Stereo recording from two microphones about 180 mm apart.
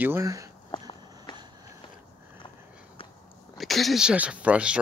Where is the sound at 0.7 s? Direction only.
25° left (ahead or behind).